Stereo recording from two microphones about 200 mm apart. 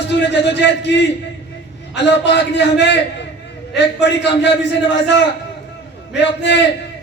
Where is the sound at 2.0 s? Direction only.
60° left (ahead or behind).